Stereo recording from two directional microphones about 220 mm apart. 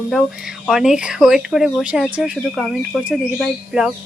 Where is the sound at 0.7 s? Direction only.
Centre (ahead or behind).